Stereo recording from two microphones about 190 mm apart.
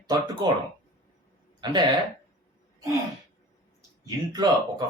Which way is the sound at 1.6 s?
25° right (ahead or behind).